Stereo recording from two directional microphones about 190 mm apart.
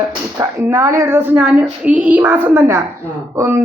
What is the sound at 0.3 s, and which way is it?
A woman's voice, 15° right (ahead or behind).